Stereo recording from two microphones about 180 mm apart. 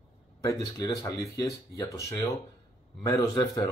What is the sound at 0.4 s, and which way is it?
Speech, 20° left (ahead or behind).